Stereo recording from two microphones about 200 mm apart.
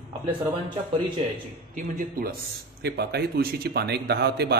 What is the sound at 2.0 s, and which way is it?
A man's voice, 45° right (ahead or behind).